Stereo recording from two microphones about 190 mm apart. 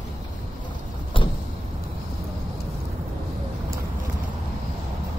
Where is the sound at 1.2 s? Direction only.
25° left (ahead or behind).